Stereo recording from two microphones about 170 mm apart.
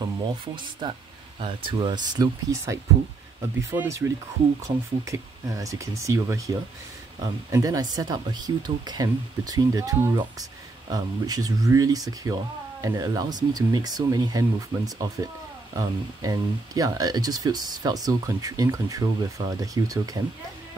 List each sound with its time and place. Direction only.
0.8 s speech: 25° right (ahead or behind)